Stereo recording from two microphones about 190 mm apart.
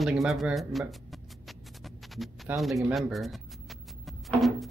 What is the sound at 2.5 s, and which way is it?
Music, centre (ahead or behind).